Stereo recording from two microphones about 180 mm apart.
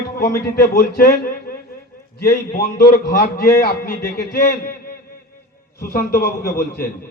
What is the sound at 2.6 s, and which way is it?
Speech, 55° left (ahead or behind).